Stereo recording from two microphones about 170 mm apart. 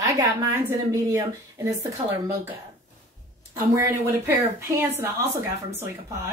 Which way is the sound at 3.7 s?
15° right (ahead or behind).